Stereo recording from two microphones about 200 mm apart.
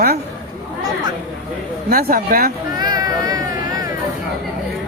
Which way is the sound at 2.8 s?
20° right (ahead or behind).